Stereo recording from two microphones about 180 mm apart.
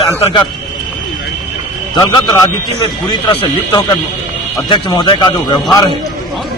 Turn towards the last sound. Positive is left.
turn(degrees=20)  # may be behind; listen again after turning